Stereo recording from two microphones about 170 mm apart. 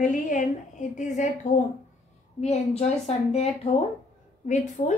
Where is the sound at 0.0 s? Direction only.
45° left (ahead or behind).